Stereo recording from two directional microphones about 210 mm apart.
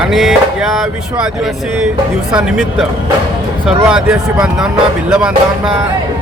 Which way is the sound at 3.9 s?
5° right (ahead or behind).